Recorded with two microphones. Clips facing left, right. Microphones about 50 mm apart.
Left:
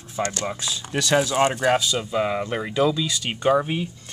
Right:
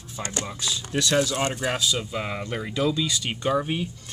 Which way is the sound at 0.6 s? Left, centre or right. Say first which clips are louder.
Even; centre.